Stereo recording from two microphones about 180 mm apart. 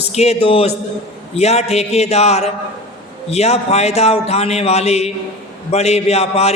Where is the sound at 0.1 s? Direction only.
35° left (ahead or behind).